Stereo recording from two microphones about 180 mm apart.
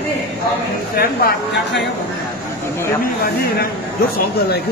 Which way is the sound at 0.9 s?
55° left (ahead or behind).